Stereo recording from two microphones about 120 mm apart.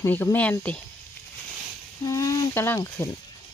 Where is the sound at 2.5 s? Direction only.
20° left (ahead or behind).